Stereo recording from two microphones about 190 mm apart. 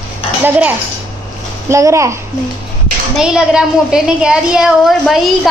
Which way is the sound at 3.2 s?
5° right (ahead or behind).